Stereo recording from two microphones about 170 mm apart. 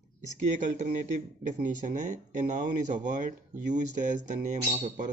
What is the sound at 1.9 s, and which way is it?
Speech, 45° right (ahead or behind).